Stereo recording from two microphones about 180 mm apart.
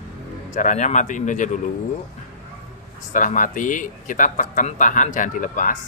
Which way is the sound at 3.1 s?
45° left (ahead or behind).